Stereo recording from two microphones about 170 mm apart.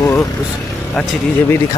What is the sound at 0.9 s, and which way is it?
Speech, centre (ahead or behind).